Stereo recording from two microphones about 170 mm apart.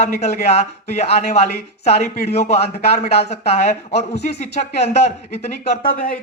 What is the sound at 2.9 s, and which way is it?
Speech, 40° left (ahead or behind).